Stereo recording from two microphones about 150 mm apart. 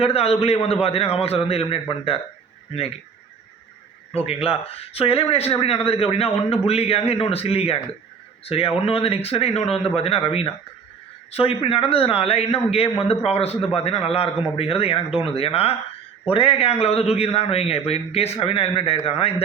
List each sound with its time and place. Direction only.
0.0 s a man's voice: 40° left (ahead or behind)
4.1 s a man's voice: 40° left (ahead or behind)